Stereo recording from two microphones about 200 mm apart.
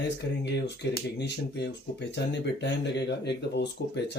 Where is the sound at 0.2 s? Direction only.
60° left (ahead or behind).